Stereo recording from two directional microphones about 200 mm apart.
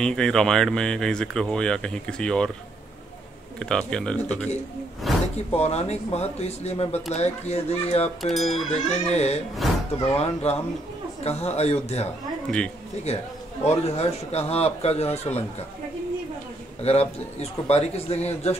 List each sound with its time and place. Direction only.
0.0 s speech: 5° left (ahead or behind)
3.5 s speech: 5° left (ahead or behind)
5.5 s speech: 30° left (ahead or behind)
8.2 s speech: centre (ahead or behind)
8.6 s speech: 30° left (ahead or behind)
12.4 s speech: 5° left (ahead or behind)
13.7 s speech: 30° left (ahead or behind)
16.8 s speech: 30° left (ahead or behind)